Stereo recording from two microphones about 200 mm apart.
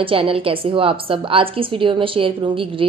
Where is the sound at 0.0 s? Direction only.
25° right (ahead or behind).